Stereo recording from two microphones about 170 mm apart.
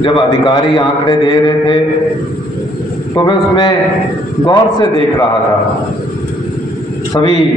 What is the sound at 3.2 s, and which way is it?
Speech, 25° left (ahead or behind).